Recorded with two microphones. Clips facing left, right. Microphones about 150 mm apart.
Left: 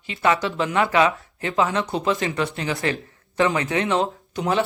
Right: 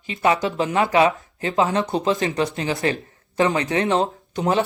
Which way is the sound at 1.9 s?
25° right (ahead or behind).